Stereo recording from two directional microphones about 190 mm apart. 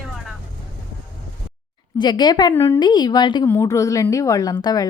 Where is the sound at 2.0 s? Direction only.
20° left (ahead or behind).